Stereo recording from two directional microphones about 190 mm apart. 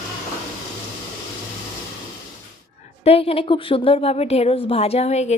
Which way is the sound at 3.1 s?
30° left (ahead or behind).